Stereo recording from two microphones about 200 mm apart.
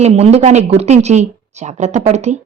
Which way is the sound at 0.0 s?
30° right (ahead or behind).